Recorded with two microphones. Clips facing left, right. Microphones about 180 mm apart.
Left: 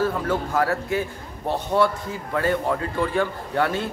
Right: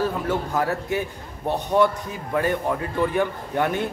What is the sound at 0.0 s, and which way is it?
A man's voice, 20° right (ahead or behind).